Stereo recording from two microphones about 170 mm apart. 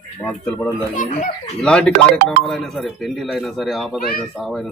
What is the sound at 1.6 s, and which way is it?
A man's voice, 5° left (ahead or behind).